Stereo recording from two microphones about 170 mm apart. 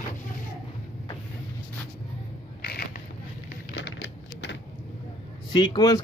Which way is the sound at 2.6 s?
65° left (ahead or behind).